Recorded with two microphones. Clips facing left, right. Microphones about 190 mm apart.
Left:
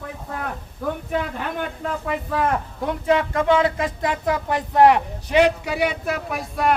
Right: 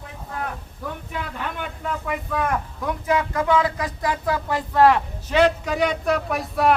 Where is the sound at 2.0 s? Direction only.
30° left (ahead or behind).